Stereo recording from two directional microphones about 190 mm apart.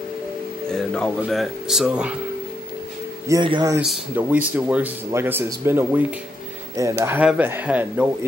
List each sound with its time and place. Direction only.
0.7 s speech: 5° left (ahead or behind)
3.3 s speech: 20° right (ahead or behind)
3.8 s speech: 5° right (ahead or behind)